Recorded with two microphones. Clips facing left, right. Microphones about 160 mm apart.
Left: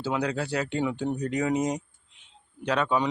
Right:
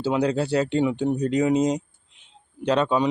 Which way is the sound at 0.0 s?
30° right (ahead or behind).